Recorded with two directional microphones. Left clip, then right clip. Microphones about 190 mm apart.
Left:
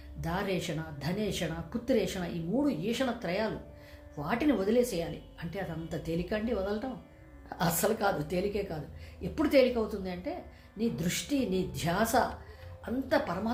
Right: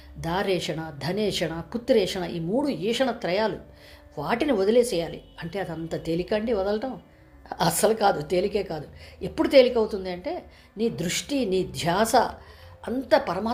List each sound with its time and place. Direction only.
0.2 s a woman's voice: 45° right (ahead or behind)